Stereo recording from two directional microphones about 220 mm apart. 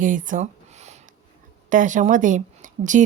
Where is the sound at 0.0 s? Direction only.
35° right (ahead or behind).